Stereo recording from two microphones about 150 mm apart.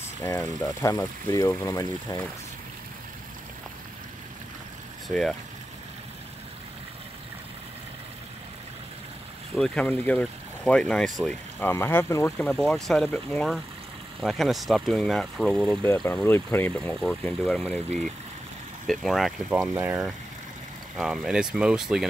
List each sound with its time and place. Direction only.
0.2 s speech: 25° left (ahead or behind)
5.0 s speech: centre (ahead or behind)
9.6 s speech: 10° left (ahead or behind)
11.6 s speech: 15° left (ahead or behind)
12.4 s speech: 5° left (ahead or behind)
15.9 s speech: 15° left (ahead or behind); by 19.6 s centre (ahead or behind)
19.6 s speech: 20° right (ahead or behind)
20.9 s speech: centre (ahead or behind)